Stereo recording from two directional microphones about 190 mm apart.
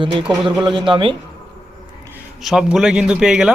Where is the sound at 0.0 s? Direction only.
25° right (ahead or behind).